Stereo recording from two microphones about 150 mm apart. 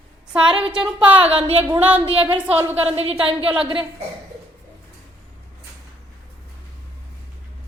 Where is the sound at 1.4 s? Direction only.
40° right (ahead or behind).